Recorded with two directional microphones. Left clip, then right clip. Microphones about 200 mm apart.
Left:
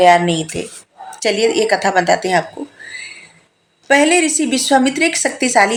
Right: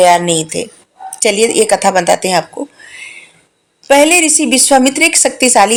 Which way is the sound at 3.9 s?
35° right (ahead or behind).